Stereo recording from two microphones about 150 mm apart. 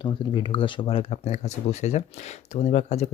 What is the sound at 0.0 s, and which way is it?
Speech, 35° left (ahead or behind).